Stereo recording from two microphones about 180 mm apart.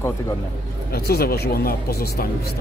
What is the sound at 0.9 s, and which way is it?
Speech, 60° left (ahead or behind).